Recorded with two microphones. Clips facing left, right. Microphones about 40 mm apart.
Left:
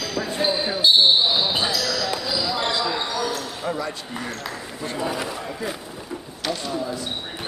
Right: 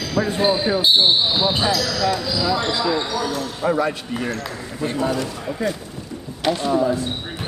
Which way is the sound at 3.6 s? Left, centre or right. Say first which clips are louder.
Right 8 dB; centre.